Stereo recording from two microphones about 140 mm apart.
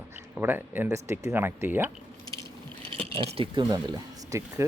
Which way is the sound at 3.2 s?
35° right (ahead or behind).